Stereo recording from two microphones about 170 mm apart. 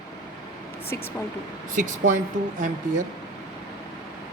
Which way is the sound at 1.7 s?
50° right (ahead or behind).